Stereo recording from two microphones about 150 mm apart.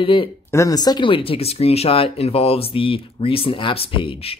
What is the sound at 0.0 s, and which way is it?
Speech, 35° left (ahead or behind).